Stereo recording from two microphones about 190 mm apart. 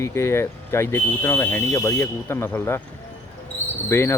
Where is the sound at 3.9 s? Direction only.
15° left (ahead or behind).